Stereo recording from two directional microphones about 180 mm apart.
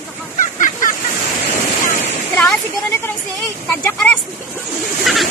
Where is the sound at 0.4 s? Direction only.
45° left (ahead or behind).